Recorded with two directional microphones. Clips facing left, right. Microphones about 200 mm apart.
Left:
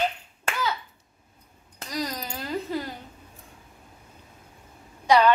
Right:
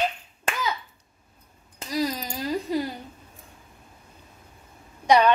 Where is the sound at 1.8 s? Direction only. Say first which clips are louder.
Right 4 dB; 10° right (ahead or behind).